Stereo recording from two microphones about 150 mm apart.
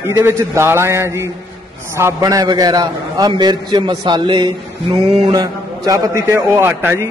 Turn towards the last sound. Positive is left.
turn(degrees=-15)  # may be behind; listen again after turning